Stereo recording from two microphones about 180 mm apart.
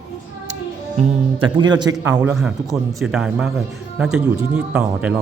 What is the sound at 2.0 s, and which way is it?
Speech, 5° right (ahead or behind).